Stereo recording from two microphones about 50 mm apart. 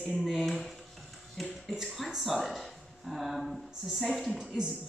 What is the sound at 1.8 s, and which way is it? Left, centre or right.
Speech, centre.